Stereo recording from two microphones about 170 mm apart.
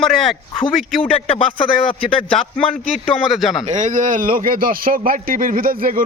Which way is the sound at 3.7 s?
45° right (ahead or behind).